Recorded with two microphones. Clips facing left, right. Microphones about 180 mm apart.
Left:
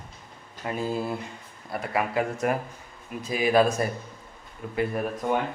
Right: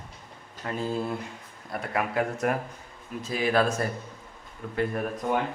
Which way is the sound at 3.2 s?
15° left (ahead or behind).